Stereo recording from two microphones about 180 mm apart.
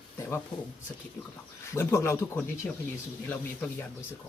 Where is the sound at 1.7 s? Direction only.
15° left (ahead or behind).